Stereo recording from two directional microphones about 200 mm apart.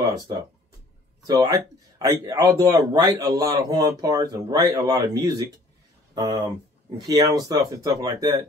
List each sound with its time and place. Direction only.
0.0 s speech: 20° right (ahead or behind)